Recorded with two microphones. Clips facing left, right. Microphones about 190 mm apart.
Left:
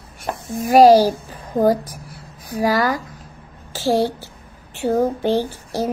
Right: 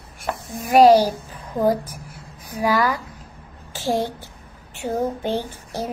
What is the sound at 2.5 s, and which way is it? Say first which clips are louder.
Speech: left 2 dB; 35° left (ahead or behind).